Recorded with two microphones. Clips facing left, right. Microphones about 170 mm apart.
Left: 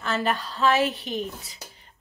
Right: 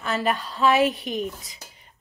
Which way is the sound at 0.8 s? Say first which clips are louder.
Right 3 dB; 35° left (ahead or behind).